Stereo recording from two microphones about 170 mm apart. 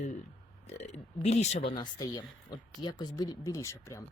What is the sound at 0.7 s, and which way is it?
Speech, 40° left (ahead or behind).